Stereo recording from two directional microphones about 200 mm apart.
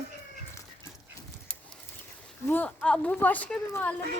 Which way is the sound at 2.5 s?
5° left (ahead or behind).